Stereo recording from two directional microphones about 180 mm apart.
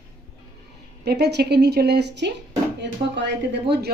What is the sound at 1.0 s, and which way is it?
A woman's voice, 65° right (ahead or behind).